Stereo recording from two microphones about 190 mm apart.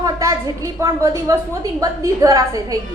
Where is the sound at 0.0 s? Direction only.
20° right (ahead or behind).